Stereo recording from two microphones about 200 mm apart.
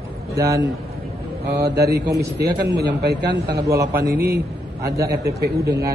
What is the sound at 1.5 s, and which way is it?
Speech, 55° right (ahead or behind).